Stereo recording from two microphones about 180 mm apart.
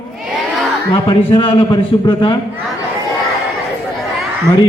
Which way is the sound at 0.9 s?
25° left (ahead or behind).